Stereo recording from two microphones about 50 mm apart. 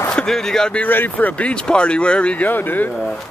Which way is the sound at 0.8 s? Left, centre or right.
Left.